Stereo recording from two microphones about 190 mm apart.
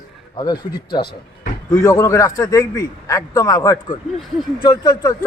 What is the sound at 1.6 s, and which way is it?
Speech, 15° left (ahead or behind).